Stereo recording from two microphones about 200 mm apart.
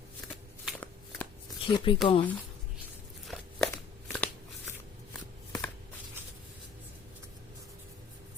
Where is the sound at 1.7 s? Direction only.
25° left (ahead or behind).